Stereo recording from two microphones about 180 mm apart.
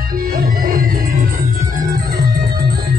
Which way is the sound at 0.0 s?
50° right (ahead or behind).